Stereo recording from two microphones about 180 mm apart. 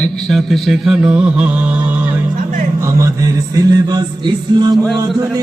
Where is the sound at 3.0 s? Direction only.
20° right (ahead or behind).